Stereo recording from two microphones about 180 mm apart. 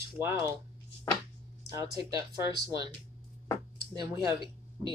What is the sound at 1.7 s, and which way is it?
Speech, 20° right (ahead or behind).